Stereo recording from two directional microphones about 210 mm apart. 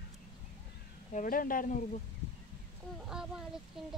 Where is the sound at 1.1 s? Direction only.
40° left (ahead or behind).